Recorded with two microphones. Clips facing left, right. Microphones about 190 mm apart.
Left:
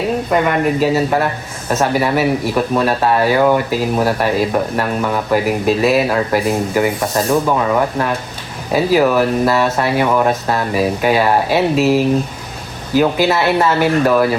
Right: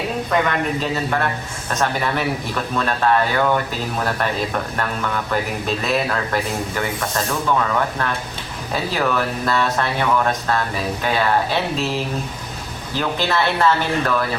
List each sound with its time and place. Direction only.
0.3 s speech: 10° left (ahead or behind)